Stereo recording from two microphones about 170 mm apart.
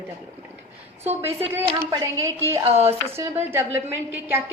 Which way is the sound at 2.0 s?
15° right (ahead or behind).